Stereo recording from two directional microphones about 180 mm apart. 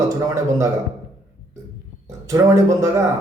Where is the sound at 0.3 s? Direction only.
20° right (ahead or behind).